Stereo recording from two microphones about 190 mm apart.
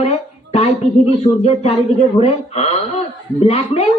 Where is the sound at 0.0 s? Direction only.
35° left (ahead or behind).